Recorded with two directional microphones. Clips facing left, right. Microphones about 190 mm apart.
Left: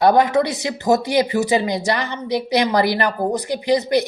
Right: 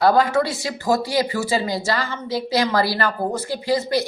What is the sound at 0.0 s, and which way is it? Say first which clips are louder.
Speech: left 2 dB; 20° left (ahead or behind).